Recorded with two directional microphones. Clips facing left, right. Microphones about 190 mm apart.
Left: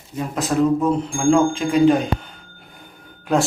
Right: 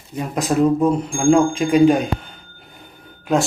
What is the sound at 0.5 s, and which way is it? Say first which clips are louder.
Speech: right 2 dB; 20° right (ahead or behind).